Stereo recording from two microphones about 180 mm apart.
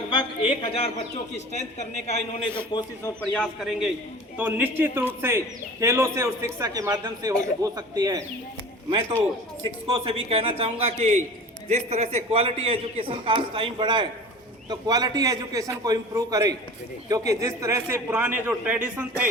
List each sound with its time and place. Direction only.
0.1 s a woman's voice: 30° left (ahead or behind)
2.7 s a man's voice: 25° left (ahead or behind)
3.3 s a man's voice: centre (ahead or behind); by 8.2 s 20° right (ahead or behind)
8.9 s a man's voice: 35° right (ahead or behind); by 19.2 s 10° right (ahead or behind)